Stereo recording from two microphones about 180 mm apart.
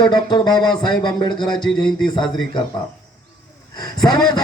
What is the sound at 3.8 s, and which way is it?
Speech, 25° left (ahead or behind).